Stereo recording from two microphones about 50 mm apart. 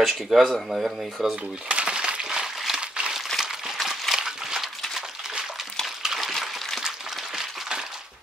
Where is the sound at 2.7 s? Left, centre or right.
Centre.